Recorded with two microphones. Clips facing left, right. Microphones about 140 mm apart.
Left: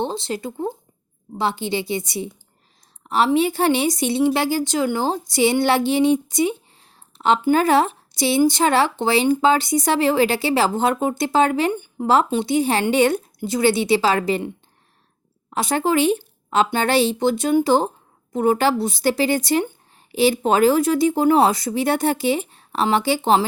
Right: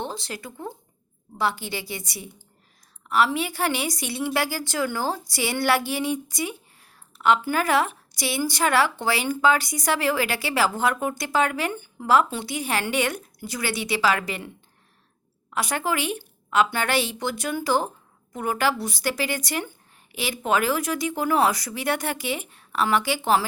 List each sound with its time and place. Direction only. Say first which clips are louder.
0.0 s speech: left 8 dB; 25° left (ahead or behind)